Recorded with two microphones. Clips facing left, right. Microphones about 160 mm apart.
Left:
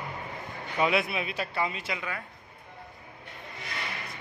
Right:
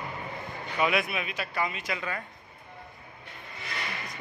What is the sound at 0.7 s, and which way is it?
A man's voice, 25° left (ahead or behind).